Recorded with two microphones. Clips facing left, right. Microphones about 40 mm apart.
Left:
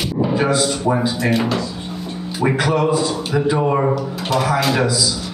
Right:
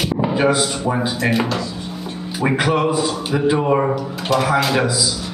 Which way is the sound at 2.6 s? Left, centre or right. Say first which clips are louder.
Even; right.